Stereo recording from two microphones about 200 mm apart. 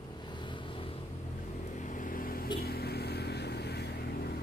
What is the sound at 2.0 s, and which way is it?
Vehicle, 45° left (ahead or behind).